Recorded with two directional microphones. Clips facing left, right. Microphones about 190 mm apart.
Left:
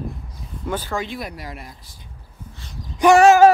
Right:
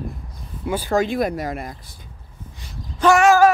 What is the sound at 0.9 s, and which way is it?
Speech, 45° right (ahead or behind).